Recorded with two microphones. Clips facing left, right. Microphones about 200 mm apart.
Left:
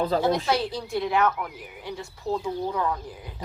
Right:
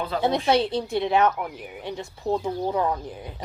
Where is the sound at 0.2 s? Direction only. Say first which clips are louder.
Right 2 dB; 25° right (ahead or behind).